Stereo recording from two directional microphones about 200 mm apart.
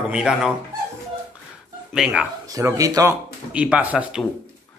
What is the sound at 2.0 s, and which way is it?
Speech, 5° right (ahead or behind).